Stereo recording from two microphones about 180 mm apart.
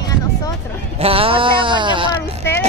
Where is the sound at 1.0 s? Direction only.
30° right (ahead or behind).